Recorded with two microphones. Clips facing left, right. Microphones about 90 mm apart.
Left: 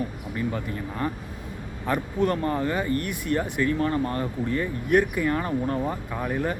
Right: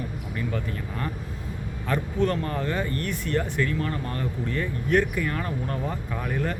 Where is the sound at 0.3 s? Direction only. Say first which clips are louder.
Left 2 dB; 20° left (ahead or behind).